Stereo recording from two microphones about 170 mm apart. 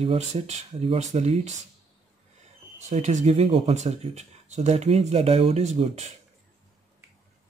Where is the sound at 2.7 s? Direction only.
45° right (ahead or behind).